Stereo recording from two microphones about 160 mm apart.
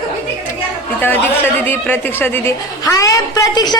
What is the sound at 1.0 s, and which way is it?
Speech, 10° left (ahead or behind).